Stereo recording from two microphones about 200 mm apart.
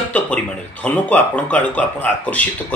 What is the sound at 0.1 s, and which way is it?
Speech, 5° left (ahead or behind).